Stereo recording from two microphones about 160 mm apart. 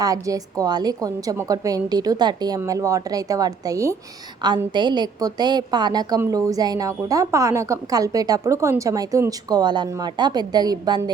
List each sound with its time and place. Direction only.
0.0 s a woman's voice: 20° right (ahead or behind)